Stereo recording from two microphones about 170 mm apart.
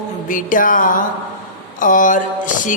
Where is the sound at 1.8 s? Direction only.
50° left (ahead or behind).